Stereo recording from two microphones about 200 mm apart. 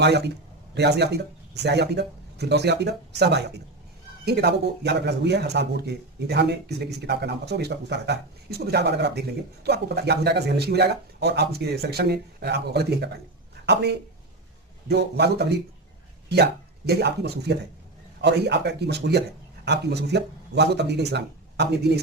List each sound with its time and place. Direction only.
0.7 s speech: 55° right (ahead or behind)
14.8 s speech: 55° right (ahead or behind)